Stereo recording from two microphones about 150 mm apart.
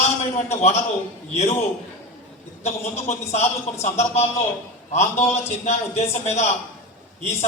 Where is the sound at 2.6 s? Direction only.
45° left (ahead or behind).